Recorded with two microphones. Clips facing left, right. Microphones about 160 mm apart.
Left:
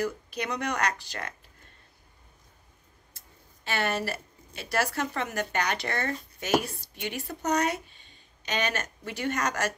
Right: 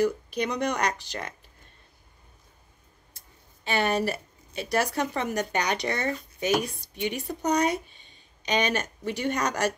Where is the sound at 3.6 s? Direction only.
15° right (ahead or behind).